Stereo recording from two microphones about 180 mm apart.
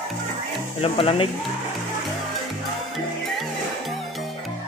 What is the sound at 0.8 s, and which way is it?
Speech, 30° left (ahead or behind).